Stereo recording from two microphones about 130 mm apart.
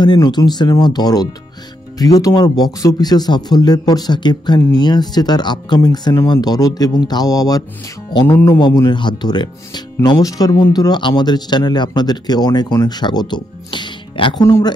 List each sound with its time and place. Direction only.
0.0 s speech: 35° left (ahead or behind)
8.1 s music: 35° left (ahead or behind)
8.5 s speech: 35° left (ahead or behind)
14.4 s speech: 30° left (ahead or behind)